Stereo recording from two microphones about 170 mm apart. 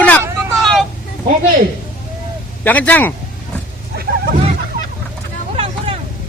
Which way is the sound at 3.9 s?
70° right (ahead or behind).